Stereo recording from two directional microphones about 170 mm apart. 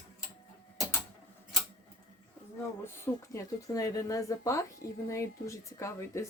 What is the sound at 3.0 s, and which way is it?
Speech, 15° left (ahead or behind).